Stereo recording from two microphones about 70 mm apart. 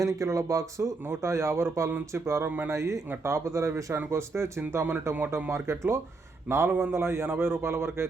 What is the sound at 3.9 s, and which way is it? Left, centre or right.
Speech, right.